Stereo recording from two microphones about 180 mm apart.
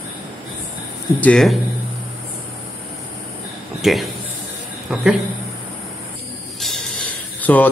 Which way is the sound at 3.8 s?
Centre (ahead or behind).